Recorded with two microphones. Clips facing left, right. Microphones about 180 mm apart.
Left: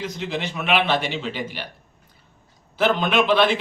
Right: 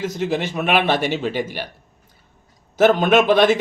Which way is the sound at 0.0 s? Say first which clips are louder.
Right 6 dB; 45° right (ahead or behind).